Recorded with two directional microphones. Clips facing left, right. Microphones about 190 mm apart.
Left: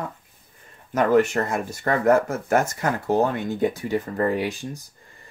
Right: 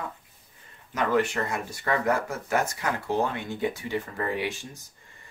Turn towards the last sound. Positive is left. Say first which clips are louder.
# left 5 dB
turn(degrees=45)  # may be behind; listen again after turning